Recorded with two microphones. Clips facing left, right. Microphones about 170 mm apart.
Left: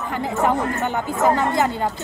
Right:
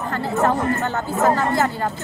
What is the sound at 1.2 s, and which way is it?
Speech, 15° left (ahead or behind).